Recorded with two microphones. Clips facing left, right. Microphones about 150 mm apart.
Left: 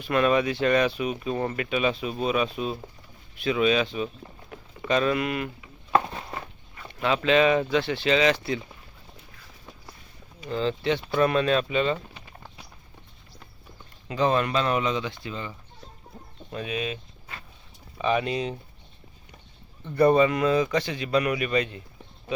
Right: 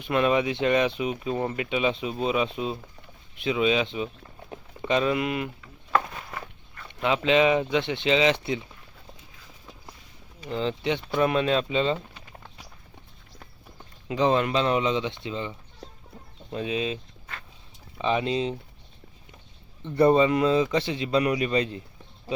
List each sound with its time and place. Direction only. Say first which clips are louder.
0.0 s a man's voice: left 1 dB; 20° right (ahead or behind)
4.5 s a sound: even; 20° right (ahead or behind)
5.9 s a sound: left 2 dB; 30° left (ahead or behind)
7.0 s a man's voice: even; 15° right (ahead or behind)
10.5 s a man's voice: left 1 dB; 20° right (ahead or behind)
14.1 s a man's voice: right 1 dB; 20° right (ahead or behind)
20.0 s a man's voice: even; 25° right (ahead or behind)